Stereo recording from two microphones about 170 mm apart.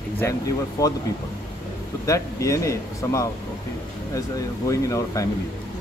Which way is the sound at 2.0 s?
20° left (ahead or behind).